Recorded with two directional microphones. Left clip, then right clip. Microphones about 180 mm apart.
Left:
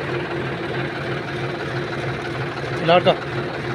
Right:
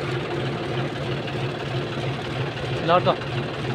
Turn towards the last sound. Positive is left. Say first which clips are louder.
# left 4 dB
turn(degrees=20)  # may be behind; listen again after turning